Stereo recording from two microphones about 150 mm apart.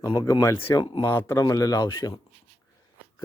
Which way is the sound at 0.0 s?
25° left (ahead or behind).